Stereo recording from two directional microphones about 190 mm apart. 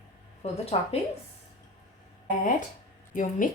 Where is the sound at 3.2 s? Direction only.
45° left (ahead or behind).